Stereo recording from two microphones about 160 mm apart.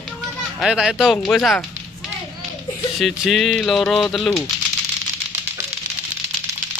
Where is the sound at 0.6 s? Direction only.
Centre (ahead or behind).